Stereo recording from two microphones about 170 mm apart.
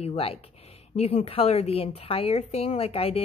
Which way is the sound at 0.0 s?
35° left (ahead or behind).